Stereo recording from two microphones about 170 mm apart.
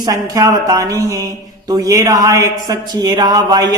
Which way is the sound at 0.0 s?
20° right (ahead or behind).